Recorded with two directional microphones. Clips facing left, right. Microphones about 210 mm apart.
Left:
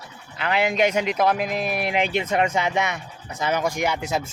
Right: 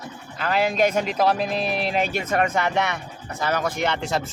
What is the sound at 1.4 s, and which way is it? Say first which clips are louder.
Speech: right 1 dB; 15° left (ahead or behind).